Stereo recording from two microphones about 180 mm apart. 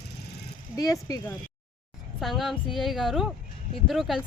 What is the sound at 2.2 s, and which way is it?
Speech, centre (ahead or behind).